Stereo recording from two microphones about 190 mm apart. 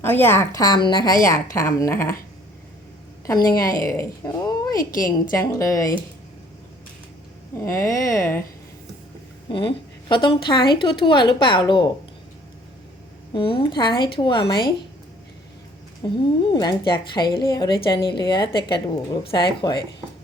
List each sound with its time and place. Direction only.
0.0 s a woman's voice: 10° left (ahead or behind)
3.2 s a woman's voice: 15° left (ahead or behind)
7.6 s a woman's voice: 15° left (ahead or behind)
9.5 s a woman's voice: 25° left (ahead or behind)
13.3 s a woman's voice: 25° left (ahead or behind)
16.0 s a woman's voice: 20° left (ahead or behind)